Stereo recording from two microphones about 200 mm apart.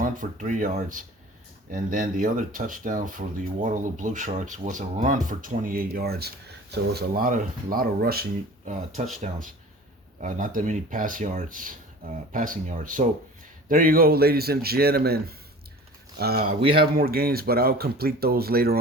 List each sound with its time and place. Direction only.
0.0 s speech: 40° right (ahead or behind)
10.2 s speech: 40° right (ahead or behind)
16.5 s speech: 30° right (ahead or behind)
16.7 s speech: 50° right (ahead or behind)